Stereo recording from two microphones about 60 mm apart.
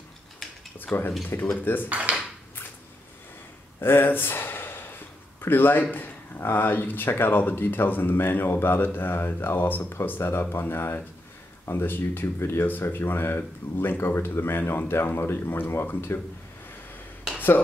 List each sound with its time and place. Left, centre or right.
0.9 s speech: centre
1.6 s speech: left
1.9 s speech: right
3.8 s speech: left